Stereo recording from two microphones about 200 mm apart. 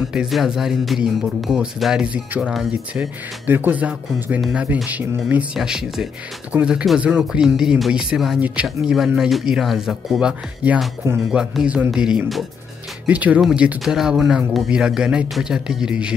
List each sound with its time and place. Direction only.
0.1 s speech: centre (ahead or behind)